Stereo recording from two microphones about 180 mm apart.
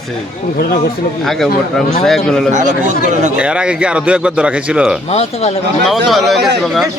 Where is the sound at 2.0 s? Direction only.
Centre (ahead or behind).